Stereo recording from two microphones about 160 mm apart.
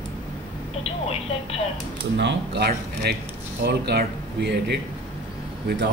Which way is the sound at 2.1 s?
90° right.